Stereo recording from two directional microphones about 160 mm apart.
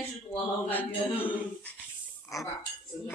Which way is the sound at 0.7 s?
10° left (ahead or behind).